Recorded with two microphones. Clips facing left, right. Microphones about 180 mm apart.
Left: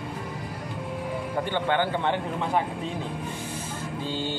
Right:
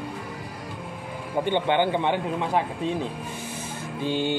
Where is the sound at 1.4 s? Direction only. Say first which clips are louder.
Right 4 dB; 20° right (ahead or behind).